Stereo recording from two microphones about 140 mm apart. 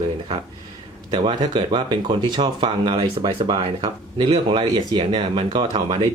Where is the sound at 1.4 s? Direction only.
35° right (ahead or behind).